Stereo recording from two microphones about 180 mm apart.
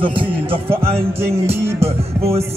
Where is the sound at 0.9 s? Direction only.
35° right (ahead or behind).